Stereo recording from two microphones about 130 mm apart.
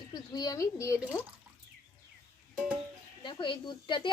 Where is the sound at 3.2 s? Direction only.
35° left (ahead or behind).